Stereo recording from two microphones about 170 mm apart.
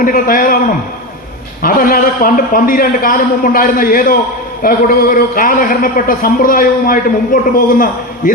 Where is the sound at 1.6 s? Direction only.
55° left (ahead or behind).